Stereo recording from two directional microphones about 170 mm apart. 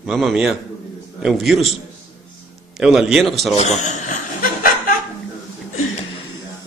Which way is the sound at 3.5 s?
40° left (ahead or behind).